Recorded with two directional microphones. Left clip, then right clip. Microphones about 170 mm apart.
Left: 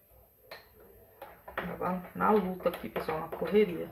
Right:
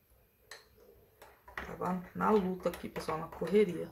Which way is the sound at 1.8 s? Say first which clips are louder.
Left 3 dB; 35° right (ahead or behind).